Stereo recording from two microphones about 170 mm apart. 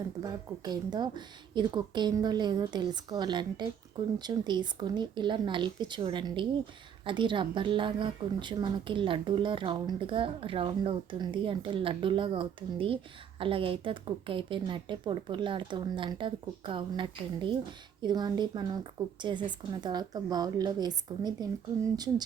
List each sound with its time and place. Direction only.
0.2 s a woman's voice: 25° right (ahead or behind)